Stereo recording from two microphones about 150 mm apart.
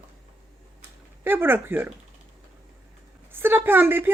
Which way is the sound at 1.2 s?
15° right (ahead or behind).